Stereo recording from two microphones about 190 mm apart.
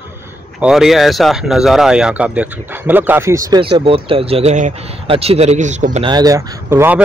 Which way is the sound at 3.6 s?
30° right (ahead or behind).